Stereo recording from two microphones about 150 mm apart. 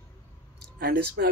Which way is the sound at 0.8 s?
90° right.